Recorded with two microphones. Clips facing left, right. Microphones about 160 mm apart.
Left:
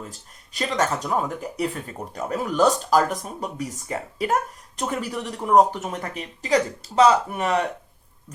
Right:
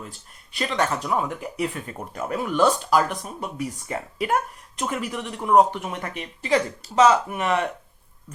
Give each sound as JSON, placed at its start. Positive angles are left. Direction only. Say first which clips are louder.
{"t": 0.1, "sound": "speech", "louder": "left 1 dB", "side_deg": 40}